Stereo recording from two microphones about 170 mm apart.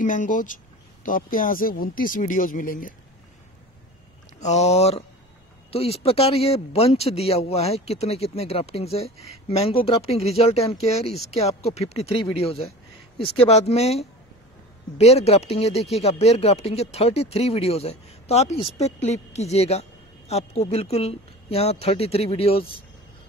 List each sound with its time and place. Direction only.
0.0 s speech: 50° left (ahead or behind)
4.4 s a woman's voice: 40° left (ahead or behind)